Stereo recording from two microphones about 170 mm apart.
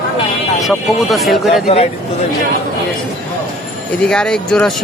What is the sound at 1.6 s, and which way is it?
Speech, 35° left (ahead or behind).